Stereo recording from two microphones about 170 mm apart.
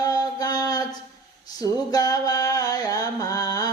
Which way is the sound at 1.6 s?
20° left (ahead or behind).